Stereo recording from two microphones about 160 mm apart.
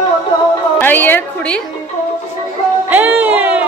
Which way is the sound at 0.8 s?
10° left (ahead or behind).